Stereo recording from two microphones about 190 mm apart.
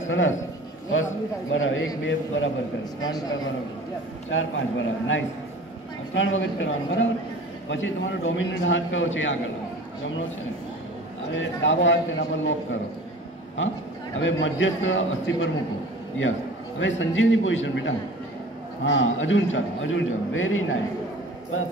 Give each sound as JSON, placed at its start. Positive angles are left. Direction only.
{"t": 0.1, "sound": "a man's voice", "side_deg": 90}
{"t": 1.5, "sound": "a man's voice", "side_deg": 90}
{"t": 3.0, "sound": "a man's voice", "side_deg": 20}
{"t": 4.3, "sound": "a man's voice", "side_deg": 90}
{"t": 11.3, "sound": "a man's voice", "side_deg": 80}
{"t": 13.6, "sound": "a man's voice", "side_deg": 75}
{"t": 16.8, "sound": "a man's voice", "side_deg": 85}